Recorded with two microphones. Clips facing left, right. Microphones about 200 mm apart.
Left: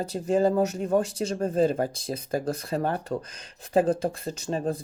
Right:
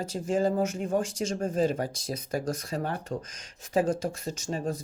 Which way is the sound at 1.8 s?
55° left (ahead or behind).